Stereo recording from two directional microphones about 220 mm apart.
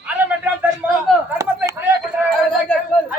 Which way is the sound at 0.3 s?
5° right (ahead or behind).